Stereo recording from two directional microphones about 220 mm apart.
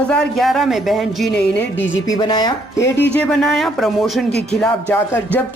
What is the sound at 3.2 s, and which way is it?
Speech, centre (ahead or behind).